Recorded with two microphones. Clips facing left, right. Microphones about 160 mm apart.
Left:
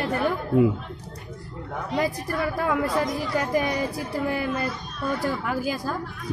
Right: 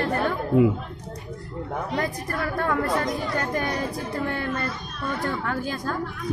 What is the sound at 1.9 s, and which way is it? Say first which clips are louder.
Speech: left 5 dB; 5° left (ahead or behind).